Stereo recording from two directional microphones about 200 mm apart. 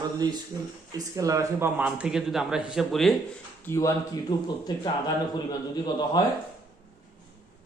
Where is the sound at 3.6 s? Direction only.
15° left (ahead or behind).